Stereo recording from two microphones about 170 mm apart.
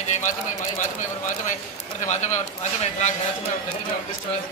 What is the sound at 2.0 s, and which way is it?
Speech, 45° left (ahead or behind).